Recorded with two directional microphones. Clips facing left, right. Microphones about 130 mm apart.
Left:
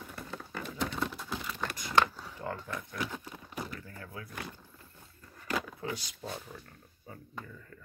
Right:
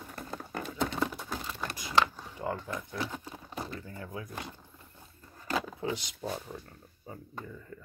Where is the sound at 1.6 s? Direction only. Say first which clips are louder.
Even; 10° right (ahead or behind).